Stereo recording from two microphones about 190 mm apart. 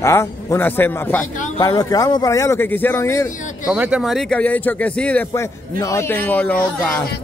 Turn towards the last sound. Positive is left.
turn(degrees=5)  # may be behind; listen again after turning